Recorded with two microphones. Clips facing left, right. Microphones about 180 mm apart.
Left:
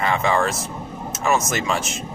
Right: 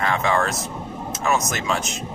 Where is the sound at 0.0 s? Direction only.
Centre (ahead or behind).